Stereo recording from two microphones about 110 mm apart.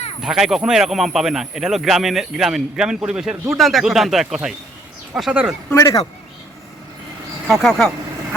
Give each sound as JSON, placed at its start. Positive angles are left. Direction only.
{"t": 0.2, "sound": "speech", "side_deg": -5}
{"t": 5.7, "sound": "speech", "side_deg": 30}
{"t": 7.4, "sound": "speech", "side_deg": 5}